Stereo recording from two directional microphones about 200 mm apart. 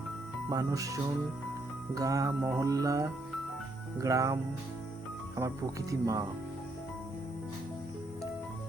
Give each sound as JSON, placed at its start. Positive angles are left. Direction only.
{"t": 0.5, "sound": "music", "side_deg": -15}
{"t": 5.9, "sound": "music", "side_deg": -15}